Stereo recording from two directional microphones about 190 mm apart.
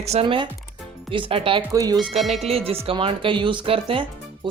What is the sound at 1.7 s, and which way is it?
Speech, 20° right (ahead or behind).